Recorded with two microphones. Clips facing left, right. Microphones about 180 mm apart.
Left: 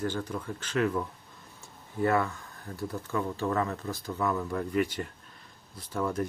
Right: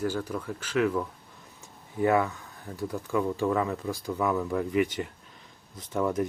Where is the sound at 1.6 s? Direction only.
15° right (ahead or behind).